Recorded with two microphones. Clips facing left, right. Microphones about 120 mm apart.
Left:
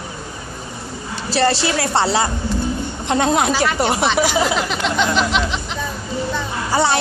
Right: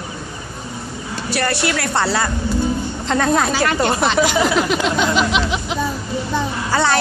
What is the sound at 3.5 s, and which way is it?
Music, 5° left (ahead or behind).